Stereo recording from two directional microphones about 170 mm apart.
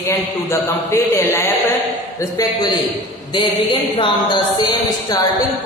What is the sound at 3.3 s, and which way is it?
A woman's voice, 30° left (ahead or behind).